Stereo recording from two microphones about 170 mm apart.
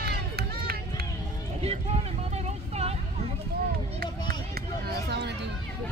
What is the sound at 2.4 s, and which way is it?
Vehicle, 40° right (ahead or behind).